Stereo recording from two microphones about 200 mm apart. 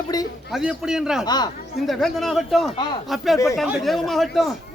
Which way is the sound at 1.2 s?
20° left (ahead or behind).